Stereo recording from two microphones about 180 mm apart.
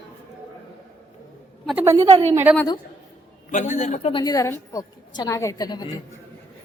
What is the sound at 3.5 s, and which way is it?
Speech, 40° left (ahead or behind).